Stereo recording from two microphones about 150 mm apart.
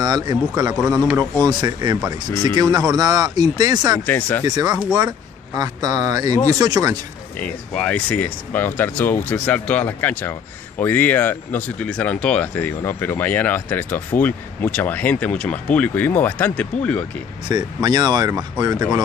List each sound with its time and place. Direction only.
0.0 s a man's voice: 25° right (ahead or behind)
4.0 s speech: 10° left (ahead or behind)
4.5 s a man's voice: 25° right (ahead or behind)
7.3 s speech: 10° left (ahead or behind)
17.5 s a man's voice: 25° right (ahead or behind)